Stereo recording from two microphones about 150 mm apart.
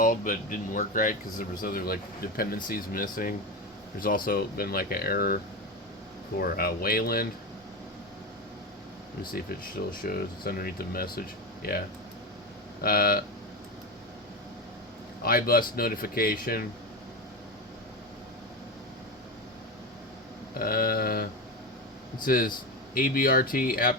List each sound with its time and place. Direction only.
0.0 s speech: 60° left (ahead or behind)
1.6 s speech: 80° left
2.6 s speech: 70° left (ahead or behind); by 5.4 s 85° left
6.4 s speech: 80° left
10.0 s speech: 75° left (ahead or behind)
12.8 s speech: 85° left
15.2 s speech: 80° left
20.5 s speech: 80° left
22.2 s speech: 75° left (ahead or behind)